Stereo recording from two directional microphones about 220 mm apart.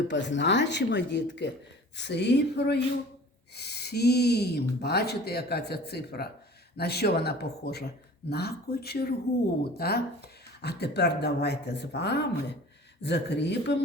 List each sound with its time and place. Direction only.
0.1 s speech: 55° left (ahead or behind)